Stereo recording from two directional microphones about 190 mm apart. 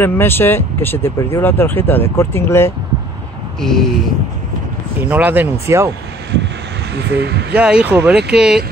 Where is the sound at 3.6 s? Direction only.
Centre (ahead or behind).